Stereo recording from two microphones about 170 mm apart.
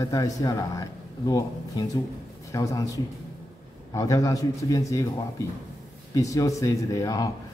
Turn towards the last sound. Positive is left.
turn(degrees=20)  # may be behind; listen again after turning